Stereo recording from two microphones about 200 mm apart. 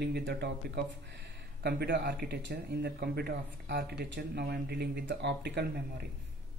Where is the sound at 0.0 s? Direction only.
55° right (ahead or behind).